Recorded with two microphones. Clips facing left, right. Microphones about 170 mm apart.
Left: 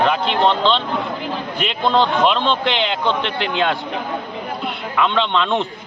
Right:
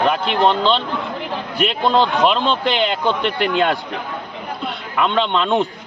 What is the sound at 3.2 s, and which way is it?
Speech, 50° right (ahead or behind).